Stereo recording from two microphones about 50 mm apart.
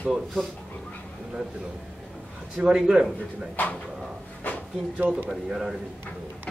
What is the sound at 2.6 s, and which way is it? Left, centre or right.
Speech, centre.